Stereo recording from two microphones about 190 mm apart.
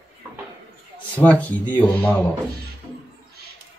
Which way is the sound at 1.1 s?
10° left (ahead or behind).